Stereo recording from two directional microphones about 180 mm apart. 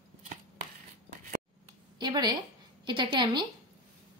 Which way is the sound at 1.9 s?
25° right (ahead or behind).